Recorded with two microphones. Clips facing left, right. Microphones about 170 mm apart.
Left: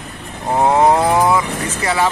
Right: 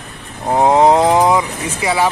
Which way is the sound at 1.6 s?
10° right (ahead or behind).